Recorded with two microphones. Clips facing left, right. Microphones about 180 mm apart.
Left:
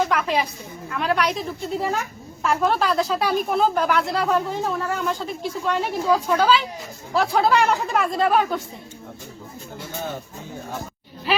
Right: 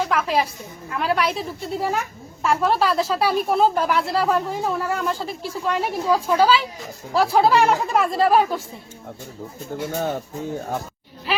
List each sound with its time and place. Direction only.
0.1 s a woman's voice: centre (ahead or behind)
9.9 s speech: 45° right (ahead or behind)